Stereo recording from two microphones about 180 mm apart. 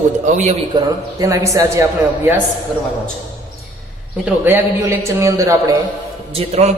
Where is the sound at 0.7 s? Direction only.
15° right (ahead or behind).